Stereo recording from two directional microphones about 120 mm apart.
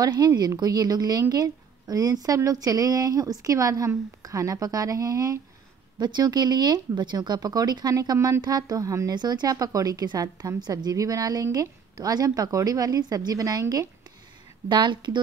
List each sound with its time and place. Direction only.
0.0 s a woman's voice: 35° right (ahead or behind)